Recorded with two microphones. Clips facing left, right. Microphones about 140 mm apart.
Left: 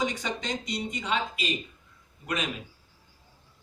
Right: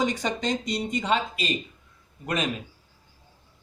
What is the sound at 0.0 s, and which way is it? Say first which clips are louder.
Speech: right 5 dB; 45° right (ahead or behind).